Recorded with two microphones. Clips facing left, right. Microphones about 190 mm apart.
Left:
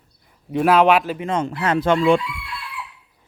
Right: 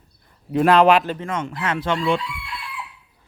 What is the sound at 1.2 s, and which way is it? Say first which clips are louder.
Speech: left 4 dB; 30° left (ahead or behind).